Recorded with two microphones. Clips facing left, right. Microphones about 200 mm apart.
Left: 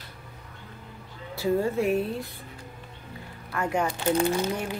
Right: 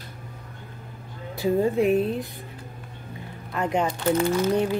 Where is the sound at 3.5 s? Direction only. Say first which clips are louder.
Right 2 dB; 20° right (ahead or behind).